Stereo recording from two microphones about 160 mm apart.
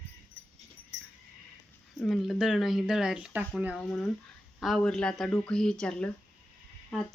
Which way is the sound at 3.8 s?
5° left (ahead or behind).